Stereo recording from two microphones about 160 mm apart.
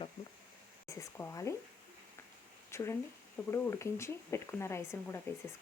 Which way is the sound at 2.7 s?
15° left (ahead or behind).